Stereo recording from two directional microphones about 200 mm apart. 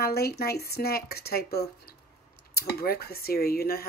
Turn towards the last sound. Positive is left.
turn(degrees=50)  # may be behind; listen again after turning